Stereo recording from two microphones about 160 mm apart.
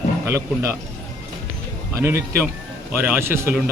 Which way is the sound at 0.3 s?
20° right (ahead or behind).